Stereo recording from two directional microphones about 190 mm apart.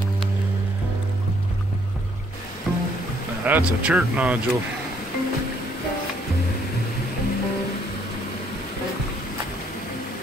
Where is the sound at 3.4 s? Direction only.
10° right (ahead or behind).